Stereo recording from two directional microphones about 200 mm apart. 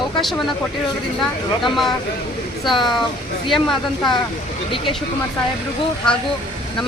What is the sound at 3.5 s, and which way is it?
Speech, centre (ahead or behind).